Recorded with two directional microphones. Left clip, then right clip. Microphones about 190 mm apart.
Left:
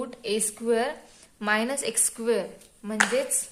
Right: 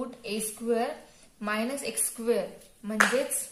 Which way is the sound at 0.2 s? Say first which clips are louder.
Left 6 dB; 40° left (ahead or behind).